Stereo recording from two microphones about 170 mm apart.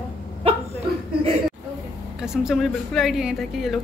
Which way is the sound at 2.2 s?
Centre (ahead or behind).